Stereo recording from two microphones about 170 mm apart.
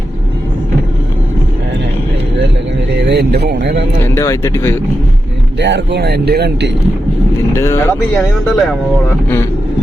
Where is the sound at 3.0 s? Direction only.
75° right (ahead or behind).